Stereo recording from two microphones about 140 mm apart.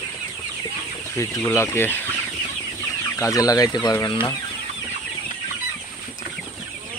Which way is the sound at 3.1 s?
20° left (ahead or behind).